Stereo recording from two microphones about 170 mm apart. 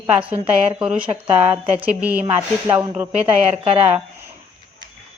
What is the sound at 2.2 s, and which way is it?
Speech, 20° right (ahead or behind).